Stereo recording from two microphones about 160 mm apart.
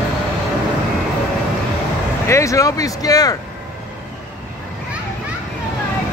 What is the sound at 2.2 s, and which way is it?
Speech, 20° left (ahead or behind).